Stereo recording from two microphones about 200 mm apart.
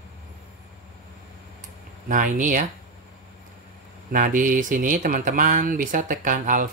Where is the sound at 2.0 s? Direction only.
40° right (ahead or behind).